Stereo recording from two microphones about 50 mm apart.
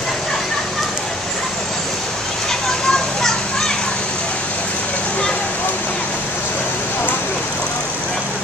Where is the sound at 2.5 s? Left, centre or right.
Centre.